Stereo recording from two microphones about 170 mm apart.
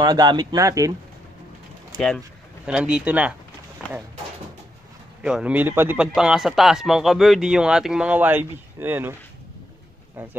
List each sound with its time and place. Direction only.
0.0 s speech: 25° right (ahead or behind)
2.0 s speech: 5° left (ahead or behind)
3.8 s a sound: 5° left (ahead or behind)
5.2 s speech: 5° right (ahead or behind)